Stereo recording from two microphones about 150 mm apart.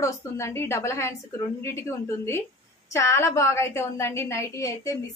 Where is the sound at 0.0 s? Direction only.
20° left (ahead or behind).